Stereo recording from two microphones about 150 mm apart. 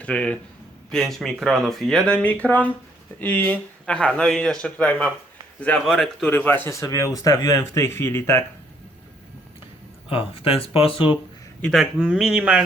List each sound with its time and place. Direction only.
0.0 s a man's voice: 10° left (ahead or behind)
10.1 s speech: 40° left (ahead or behind)
11.6 s speech: centre (ahead or behind)